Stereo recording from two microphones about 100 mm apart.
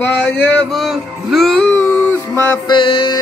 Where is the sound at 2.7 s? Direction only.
60° left (ahead or behind).